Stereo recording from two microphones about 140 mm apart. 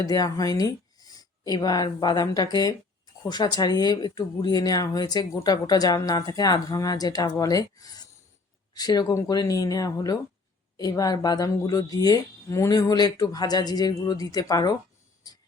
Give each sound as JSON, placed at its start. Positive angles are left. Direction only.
{"t": 0.0, "sound": "speech", "side_deg": 25}